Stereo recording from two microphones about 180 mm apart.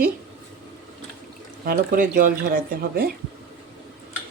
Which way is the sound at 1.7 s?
50° right (ahead or behind).